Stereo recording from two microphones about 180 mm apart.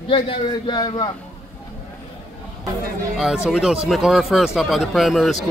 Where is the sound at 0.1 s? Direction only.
25° left (ahead or behind).